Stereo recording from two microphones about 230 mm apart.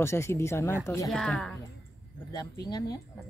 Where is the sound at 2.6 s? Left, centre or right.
Centre.